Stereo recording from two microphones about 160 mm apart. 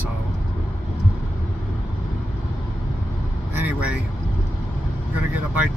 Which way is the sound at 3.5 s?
10° right (ahead or behind).